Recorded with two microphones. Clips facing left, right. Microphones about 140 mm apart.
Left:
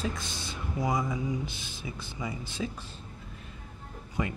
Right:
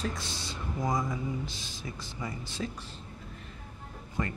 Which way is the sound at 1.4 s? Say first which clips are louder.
Left 1 dB; 60° left (ahead or behind).